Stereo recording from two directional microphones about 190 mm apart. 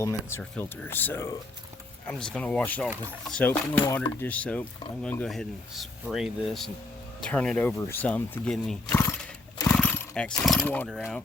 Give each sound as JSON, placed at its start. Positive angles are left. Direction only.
{"t": 0.3, "sound": "speech", "side_deg": 10}